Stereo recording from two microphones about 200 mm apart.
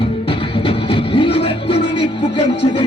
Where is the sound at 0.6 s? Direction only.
25° left (ahead or behind).